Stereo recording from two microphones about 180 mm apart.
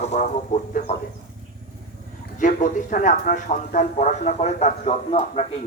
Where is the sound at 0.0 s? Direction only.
40° left (ahead or behind).